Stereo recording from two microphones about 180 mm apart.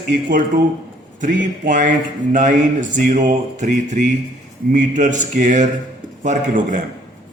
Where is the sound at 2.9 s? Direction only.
45° right (ahead or behind).